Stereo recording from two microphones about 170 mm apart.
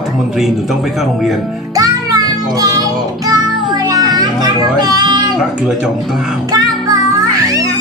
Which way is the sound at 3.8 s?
25° right (ahead or behind).